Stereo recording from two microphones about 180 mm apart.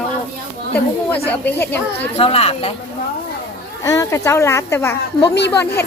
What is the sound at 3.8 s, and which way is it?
Speech, 20° left (ahead or behind).